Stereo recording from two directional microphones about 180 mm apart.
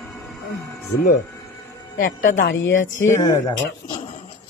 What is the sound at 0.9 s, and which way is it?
Speech, 60° left (ahead or behind).